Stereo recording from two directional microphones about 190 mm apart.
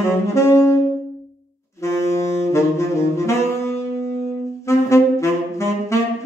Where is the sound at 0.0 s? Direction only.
15° left (ahead or behind).